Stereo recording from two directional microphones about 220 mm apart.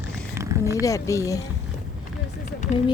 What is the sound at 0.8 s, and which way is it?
Speech, 15° left (ahead or behind).